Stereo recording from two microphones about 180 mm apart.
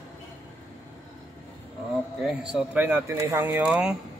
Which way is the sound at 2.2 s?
5° right (ahead or behind).